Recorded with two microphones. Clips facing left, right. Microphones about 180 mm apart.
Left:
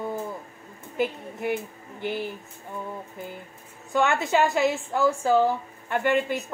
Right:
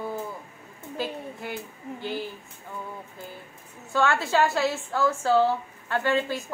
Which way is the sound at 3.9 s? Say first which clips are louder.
Left 1 dB; 20° left (ahead or behind).